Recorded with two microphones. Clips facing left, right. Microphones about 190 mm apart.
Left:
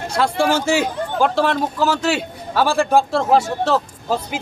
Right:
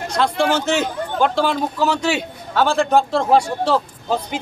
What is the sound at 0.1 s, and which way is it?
A man's voice, 10° left (ahead or behind).